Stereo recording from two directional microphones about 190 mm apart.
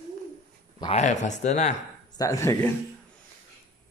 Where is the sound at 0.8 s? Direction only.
35° left (ahead or behind).